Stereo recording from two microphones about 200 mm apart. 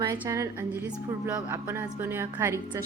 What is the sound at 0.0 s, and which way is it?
A woman's voice, 15° right (ahead or behind).